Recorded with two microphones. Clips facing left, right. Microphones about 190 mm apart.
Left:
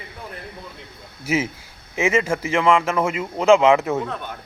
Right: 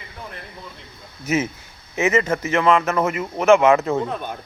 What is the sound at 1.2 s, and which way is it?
Speech, 10° left (ahead or behind).